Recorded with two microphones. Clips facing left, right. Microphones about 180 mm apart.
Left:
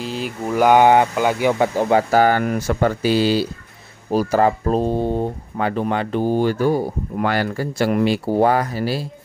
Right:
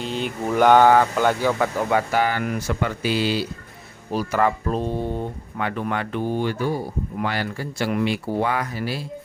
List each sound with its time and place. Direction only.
0.0 s mantra: centre (ahead or behind)
1.1 s speech: 10° left (ahead or behind)
1.5 s speech: 25° left (ahead or behind)